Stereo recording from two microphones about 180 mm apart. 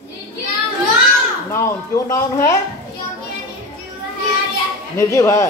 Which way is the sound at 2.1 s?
15° left (ahead or behind).